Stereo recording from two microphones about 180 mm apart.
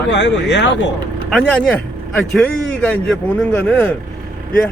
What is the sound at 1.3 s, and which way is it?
A man's voice, 5° left (ahead or behind).